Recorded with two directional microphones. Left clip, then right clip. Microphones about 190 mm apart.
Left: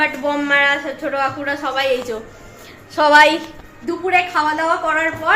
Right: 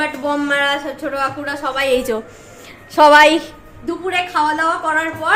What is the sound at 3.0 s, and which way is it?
Speech, 35° right (ahead or behind).